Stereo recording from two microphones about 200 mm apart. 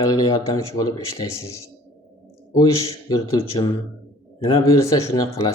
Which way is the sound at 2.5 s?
15° left (ahead or behind).